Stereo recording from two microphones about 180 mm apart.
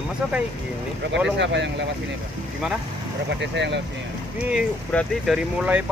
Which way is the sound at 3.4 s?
75° right (ahead or behind).